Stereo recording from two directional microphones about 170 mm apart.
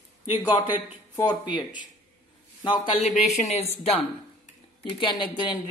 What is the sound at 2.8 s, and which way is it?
Speech, 30° left (ahead or behind).